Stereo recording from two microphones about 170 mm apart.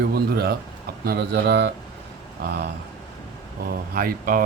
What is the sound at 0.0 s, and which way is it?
Speech, 65° right (ahead or behind).